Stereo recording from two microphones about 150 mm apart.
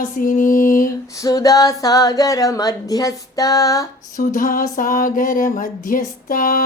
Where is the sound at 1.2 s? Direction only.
25° left (ahead or behind).